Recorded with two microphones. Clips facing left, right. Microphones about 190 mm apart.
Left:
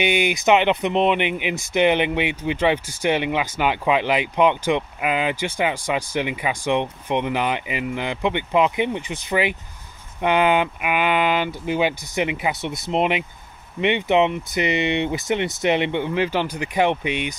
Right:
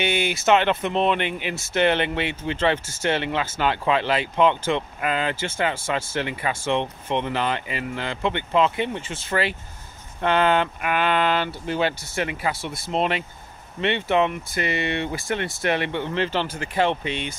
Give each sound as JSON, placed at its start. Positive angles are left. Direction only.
{"t": 0.0, "sound": "speech", "side_deg": 15}